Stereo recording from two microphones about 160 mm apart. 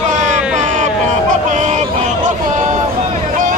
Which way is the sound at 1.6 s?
50° right (ahead or behind).